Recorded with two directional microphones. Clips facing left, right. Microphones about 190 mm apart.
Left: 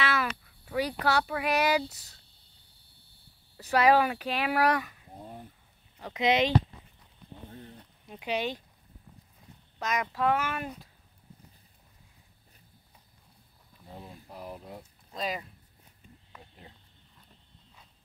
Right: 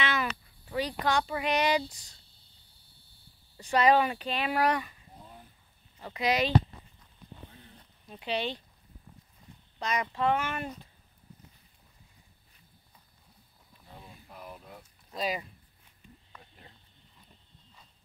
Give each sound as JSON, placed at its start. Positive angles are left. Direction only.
{"t": 0.0, "sound": "a sound", "side_deg": 0}
{"t": 1.0, "sound": "speech", "side_deg": 10}
{"t": 3.7, "sound": "speech", "side_deg": 5}
{"t": 5.2, "sound": "a sound", "side_deg": 45}
{"t": 5.9, "sound": "speech", "side_deg": 15}
{"t": 8.1, "sound": "speech", "side_deg": 10}
{"t": 9.8, "sound": "speech", "side_deg": 5}
{"t": 13.8, "sound": "a sound", "side_deg": 30}
{"t": 15.1, "sound": "speech", "side_deg": 0}